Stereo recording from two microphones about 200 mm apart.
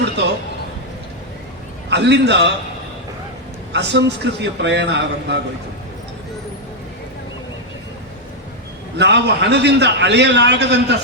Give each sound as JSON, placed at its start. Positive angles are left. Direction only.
{"t": 1.9, "sound": "a man's voice", "side_deg": -60}
{"t": 3.7, "sound": "a man's voice", "side_deg": -60}
{"t": 9.0, "sound": "a man's voice", "side_deg": -60}